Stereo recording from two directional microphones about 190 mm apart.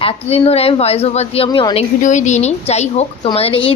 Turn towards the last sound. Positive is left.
turn(degrees=30)  # may be behind; listen again after turning